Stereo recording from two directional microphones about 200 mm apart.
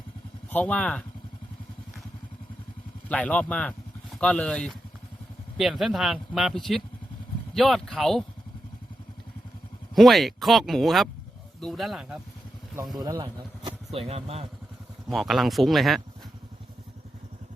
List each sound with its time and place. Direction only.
0.5 s speech: 10° left (ahead or behind)
3.1 s speech: 5° left (ahead or behind)
9.9 s speech: centre (ahead or behind)
13.0 s speech: 15° right (ahead or behind)
13.7 s speech: 30° right (ahead or behind)
15.1 s speech: centre (ahead or behind)